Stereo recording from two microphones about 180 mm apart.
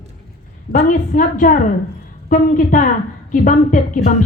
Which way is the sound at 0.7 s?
50° left (ahead or behind).